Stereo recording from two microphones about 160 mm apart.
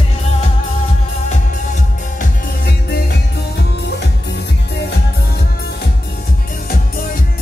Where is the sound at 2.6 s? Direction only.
90° left.